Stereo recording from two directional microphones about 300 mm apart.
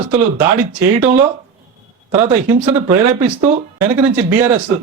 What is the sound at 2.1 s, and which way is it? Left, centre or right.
A man's voice, centre.